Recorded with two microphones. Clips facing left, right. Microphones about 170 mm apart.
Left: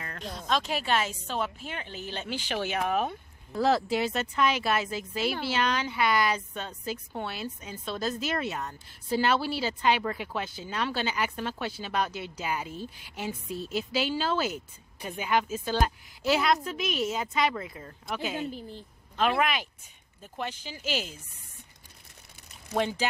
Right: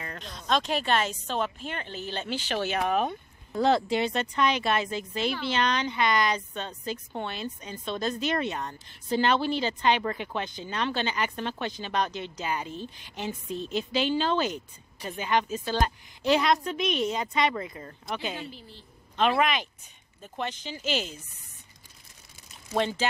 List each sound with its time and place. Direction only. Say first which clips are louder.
0.5 s a woman's voice: right 2 dB; 5° left (ahead or behind)
18.4 s speech: left 6 dB; 50° left (ahead or behind)
19.1 s a woman's voice: right 2 dB; 5° left (ahead or behind)
22.8 s a woman's voice: right 1 dB; 10° left (ahead or behind)